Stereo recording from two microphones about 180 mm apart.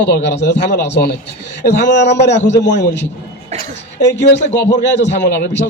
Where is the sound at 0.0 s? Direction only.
70° left (ahead or behind).